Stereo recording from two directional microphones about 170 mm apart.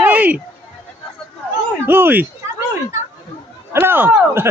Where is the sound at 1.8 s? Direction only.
10° right (ahead or behind).